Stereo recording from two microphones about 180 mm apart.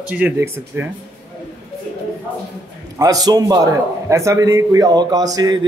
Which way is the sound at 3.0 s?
20° right (ahead or behind).